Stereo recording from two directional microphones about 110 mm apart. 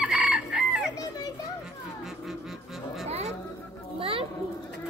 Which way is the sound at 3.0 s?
80° right.